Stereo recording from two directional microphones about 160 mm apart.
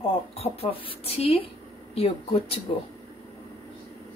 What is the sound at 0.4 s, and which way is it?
Speech, 35° left (ahead or behind).